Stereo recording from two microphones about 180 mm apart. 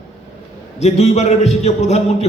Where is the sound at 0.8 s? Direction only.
35° left (ahead or behind).